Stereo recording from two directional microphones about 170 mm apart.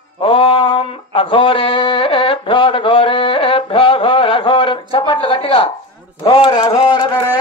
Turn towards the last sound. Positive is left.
turn(degrees=30)  # may be behind; listen again after turning